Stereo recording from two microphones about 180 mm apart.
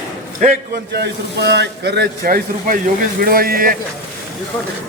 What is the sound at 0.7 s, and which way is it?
Speech, 65° right (ahead or behind).